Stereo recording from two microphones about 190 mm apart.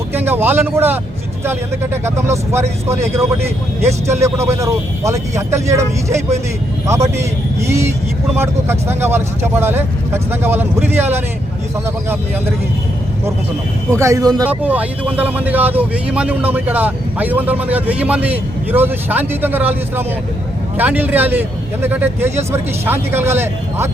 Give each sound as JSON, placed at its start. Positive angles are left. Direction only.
{"t": 0.1, "sound": "speech", "side_deg": -10}
{"t": 13.9, "sound": "speech", "side_deg": -15}
{"t": 14.4, "sound": "speech", "side_deg": -10}